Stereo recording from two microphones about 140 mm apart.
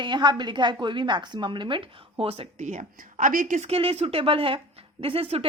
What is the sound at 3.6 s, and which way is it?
Speech, 45° right (ahead or behind).